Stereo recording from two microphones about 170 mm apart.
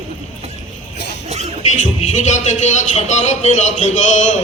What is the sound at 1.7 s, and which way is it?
A man's voice, 40° left (ahead or behind).